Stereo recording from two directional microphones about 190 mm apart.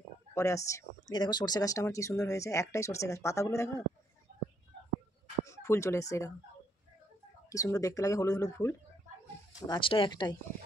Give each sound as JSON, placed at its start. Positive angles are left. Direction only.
{"t": 0.3, "sound": "speech", "side_deg": 15}
{"t": 5.4, "sound": "speech", "side_deg": 15}
{"t": 7.5, "sound": "speech", "side_deg": 20}
{"t": 9.7, "sound": "speech", "side_deg": 25}